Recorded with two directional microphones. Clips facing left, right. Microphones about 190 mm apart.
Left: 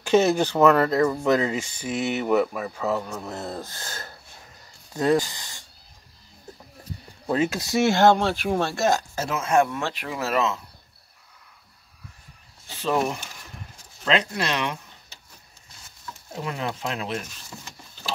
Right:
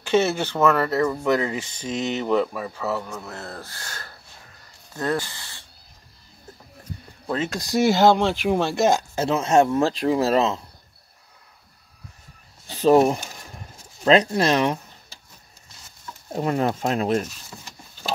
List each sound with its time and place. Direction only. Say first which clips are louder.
0.0 s speech: left 2 dB; 15° left (ahead or behind)
7.2 s speech: left 3 dB; 10° left (ahead or behind); by 10.6 s 35° right (ahead or behind)
12.6 s speech: right 8 dB; 40° right (ahead or behind)
16.3 s speech: right 8 dB; 45° right (ahead or behind)